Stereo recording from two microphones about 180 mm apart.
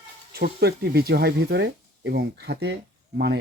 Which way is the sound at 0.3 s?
60° right (ahead or behind).